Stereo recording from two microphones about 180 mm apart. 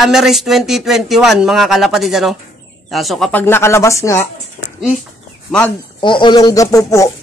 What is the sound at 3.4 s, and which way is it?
Speech, 15° left (ahead or behind).